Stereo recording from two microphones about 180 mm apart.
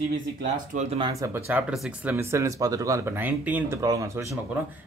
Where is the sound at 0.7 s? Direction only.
30° right (ahead or behind).